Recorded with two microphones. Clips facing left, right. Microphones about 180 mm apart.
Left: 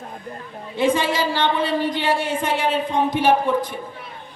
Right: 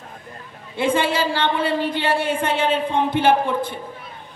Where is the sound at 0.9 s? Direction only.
15° left (ahead or behind).